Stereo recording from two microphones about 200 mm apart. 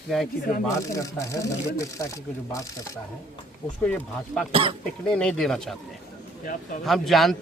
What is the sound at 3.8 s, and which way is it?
Speech, 5° left (ahead or behind).